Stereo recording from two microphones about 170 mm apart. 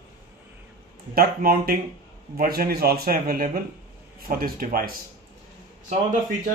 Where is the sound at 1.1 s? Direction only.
60° right (ahead or behind).